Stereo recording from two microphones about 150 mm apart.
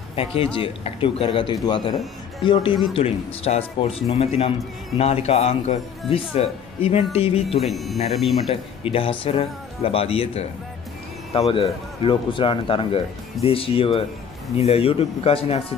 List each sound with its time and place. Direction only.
0.1 s a man's voice: 40° left (ahead or behind)
7.6 s speech: centre (ahead or behind)
8.5 s a man's voice: 40° left (ahead or behind)